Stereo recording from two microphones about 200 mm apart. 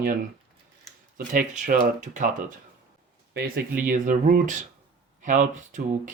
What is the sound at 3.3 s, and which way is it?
Speech, 55° right (ahead or behind).